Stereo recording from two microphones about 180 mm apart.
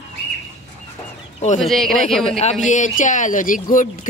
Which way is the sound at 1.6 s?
Centre (ahead or behind).